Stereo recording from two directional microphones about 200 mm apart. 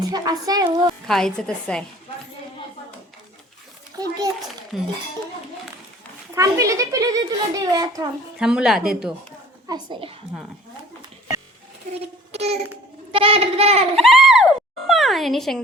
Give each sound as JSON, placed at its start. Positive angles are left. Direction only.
{"t": 0.1, "sound": "a woman's voice", "side_deg": -20}
{"t": 1.0, "sound": "speech", "side_deg": 0}
{"t": 4.0, "sound": "a child's voice", "side_deg": -15}
{"t": 4.7, "sound": "speech", "side_deg": 0}
{"t": 6.3, "sound": "a child's voice", "side_deg": -15}
{"t": 8.4, "sound": "speech", "side_deg": -5}
{"t": 9.6, "sound": "a woman's voice", "side_deg": -20}
{"t": 12.3, "sound": "child singing", "side_deg": -30}
{"t": 13.1, "sound": "speech", "side_deg": -25}
{"t": 13.9, "sound": "speech", "side_deg": 0}